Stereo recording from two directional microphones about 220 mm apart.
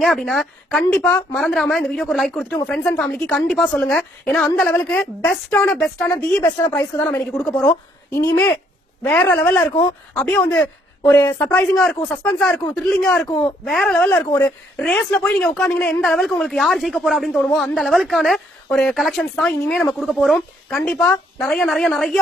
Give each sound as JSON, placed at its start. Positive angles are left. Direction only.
{"t": 0.0, "sound": "a woman's voice", "side_deg": 0}
{"t": 9.0, "sound": "a woman's voice", "side_deg": 5}
{"t": 12.4, "sound": "speech", "side_deg": 5}
{"t": 13.3, "sound": "speech", "side_deg": 20}
{"t": 13.7, "sound": "speech", "side_deg": 0}